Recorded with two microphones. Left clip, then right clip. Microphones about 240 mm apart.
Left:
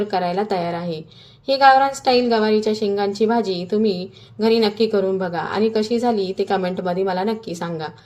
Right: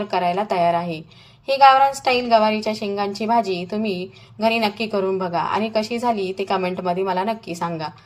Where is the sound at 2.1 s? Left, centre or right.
Right.